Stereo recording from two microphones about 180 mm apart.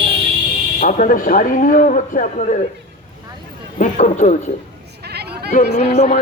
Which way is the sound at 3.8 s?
40° left (ahead or behind).